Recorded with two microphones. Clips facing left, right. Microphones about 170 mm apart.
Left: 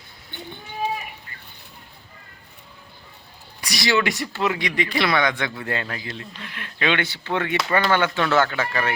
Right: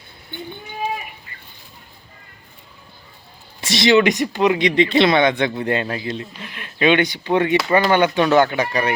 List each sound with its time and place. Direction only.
3.6 s speech: 25° right (ahead or behind)